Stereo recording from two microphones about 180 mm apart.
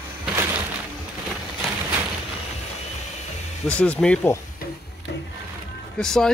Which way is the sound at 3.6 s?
5° left (ahead or behind).